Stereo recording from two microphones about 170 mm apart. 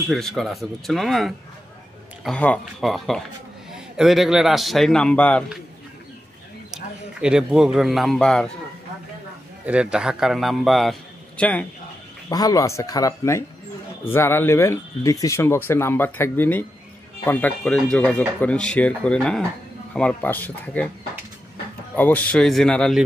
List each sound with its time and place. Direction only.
0.1 s a man's voice: centre (ahead or behind)
6.7 s speech: 5° right (ahead or behind)
9.7 s a man's voice: 5° right (ahead or behind)
12.3 s speech: 20° left (ahead or behind)
21.9 s a man's voice: 10° left (ahead or behind)